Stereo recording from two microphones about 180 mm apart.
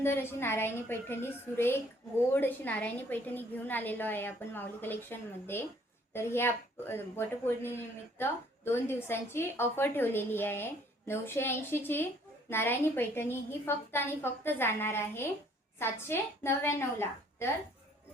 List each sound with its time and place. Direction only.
0.0 s a woman's voice: 15° left (ahead or behind)